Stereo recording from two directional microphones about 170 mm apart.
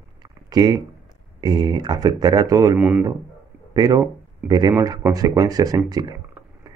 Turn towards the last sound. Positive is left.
turn(degrees=-25)  # may be behind; listen again after turning